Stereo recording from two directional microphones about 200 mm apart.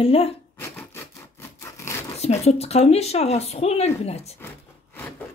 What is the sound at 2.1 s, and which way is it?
Speech, 30° left (ahead or behind).